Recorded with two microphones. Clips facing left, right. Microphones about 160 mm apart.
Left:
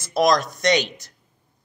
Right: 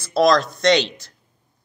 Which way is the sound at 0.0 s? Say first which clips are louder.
Right 3 dB; 15° left (ahead or behind).